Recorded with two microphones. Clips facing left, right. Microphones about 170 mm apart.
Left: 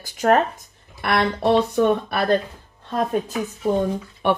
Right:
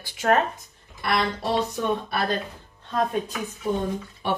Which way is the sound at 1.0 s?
60° left (ahead or behind).